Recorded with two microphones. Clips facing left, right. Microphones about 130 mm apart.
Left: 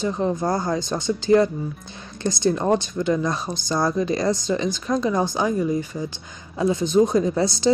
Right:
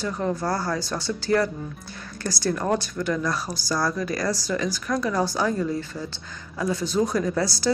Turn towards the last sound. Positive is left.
turn(degrees=20)  # may be behind; listen again after turning